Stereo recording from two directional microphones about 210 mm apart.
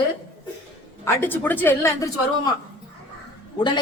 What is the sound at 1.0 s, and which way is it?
Speech, 10° left (ahead or behind).